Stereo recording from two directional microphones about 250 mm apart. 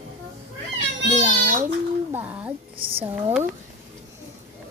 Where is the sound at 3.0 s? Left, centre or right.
Centre.